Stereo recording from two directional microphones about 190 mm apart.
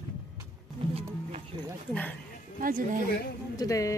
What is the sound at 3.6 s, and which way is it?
Speech, 15° left (ahead or behind).